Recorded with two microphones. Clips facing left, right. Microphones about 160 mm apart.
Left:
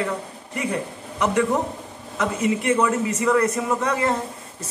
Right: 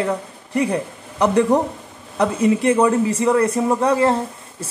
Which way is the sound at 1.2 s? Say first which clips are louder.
Right 5 dB; 35° right (ahead or behind).